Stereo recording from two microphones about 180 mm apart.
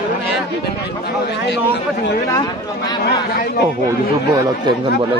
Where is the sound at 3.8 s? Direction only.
20° right (ahead or behind).